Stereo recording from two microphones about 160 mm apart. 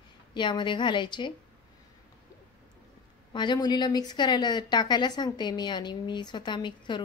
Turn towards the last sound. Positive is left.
turn(degrees=30)  # may be behind; listen again after turning